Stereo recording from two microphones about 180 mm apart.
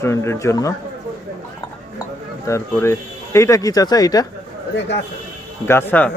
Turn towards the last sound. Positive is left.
turn(degrees=10)  # may be behind; listen again after turning